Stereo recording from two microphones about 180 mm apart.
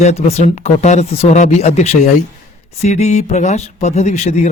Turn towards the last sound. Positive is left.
turn(degrees=40)  # may be behind; listen again after turning